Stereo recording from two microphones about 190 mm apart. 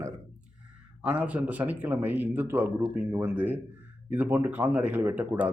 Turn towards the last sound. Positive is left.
turn(degrees=-10)  # may be behind; listen again after turning